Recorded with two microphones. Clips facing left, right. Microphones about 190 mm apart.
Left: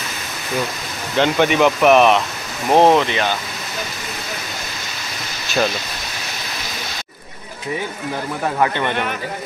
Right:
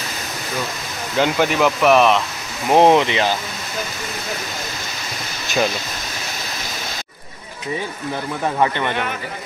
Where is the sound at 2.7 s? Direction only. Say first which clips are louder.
Even; 15° right (ahead or behind).